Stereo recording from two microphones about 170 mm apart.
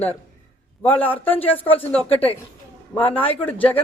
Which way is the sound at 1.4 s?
35° left (ahead or behind).